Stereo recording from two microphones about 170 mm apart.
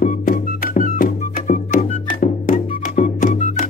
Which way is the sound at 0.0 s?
55° left (ahead or behind).